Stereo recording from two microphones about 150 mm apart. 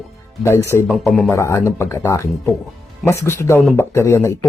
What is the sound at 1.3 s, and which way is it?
Speech, 20° left (ahead or behind).